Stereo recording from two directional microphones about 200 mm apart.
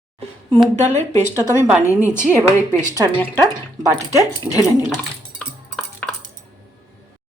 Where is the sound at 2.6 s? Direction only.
15° right (ahead or behind).